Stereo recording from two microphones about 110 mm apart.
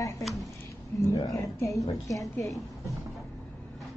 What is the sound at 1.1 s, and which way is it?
Speech, 30° left (ahead or behind).